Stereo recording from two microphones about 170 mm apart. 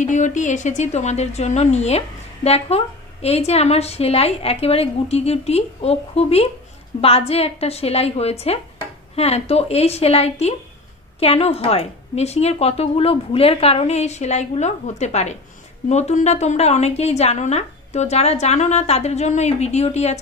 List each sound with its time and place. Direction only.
0.0 s speech: 45° left (ahead or behind)